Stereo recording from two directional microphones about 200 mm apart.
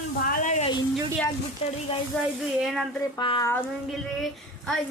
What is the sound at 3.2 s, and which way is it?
Speech, 20° left (ahead or behind).